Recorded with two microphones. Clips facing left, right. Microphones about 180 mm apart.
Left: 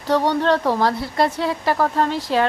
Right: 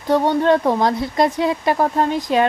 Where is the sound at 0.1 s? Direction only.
15° right (ahead or behind).